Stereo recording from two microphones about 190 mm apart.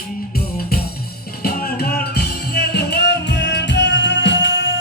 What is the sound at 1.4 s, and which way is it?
Music, 55° left (ahead or behind).